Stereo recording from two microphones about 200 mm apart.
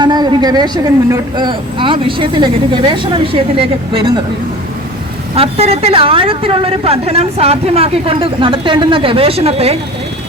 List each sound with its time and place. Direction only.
0.0 s a woman's voice: 20° right (ahead or behind)
5.3 s a woman's voice: 30° right (ahead or behind)